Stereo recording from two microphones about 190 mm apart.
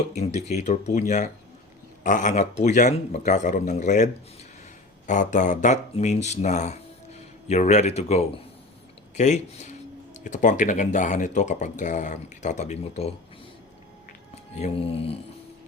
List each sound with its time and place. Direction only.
0.1 s speech: 35° left (ahead or behind)
14.5 s speech: 30° left (ahead or behind)